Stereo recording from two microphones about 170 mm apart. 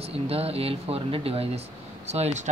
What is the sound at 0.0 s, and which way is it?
Speech, 35° right (ahead or behind).